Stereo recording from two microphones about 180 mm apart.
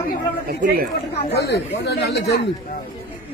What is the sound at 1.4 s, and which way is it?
Speech, 65° left (ahead or behind).